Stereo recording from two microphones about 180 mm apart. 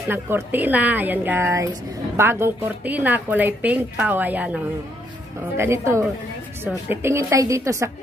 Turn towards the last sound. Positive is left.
turn(degrees=-15)  # may be behind; listen again after turning